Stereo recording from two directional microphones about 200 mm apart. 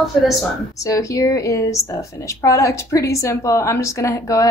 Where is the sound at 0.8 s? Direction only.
15° left (ahead or behind).